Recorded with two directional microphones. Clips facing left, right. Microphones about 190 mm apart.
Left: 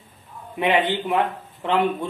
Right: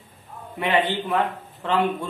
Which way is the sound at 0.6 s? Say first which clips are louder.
Left 2 dB; 20° left (ahead or behind).